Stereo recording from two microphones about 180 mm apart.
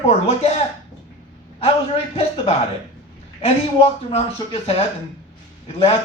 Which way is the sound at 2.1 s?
35° left (ahead or behind).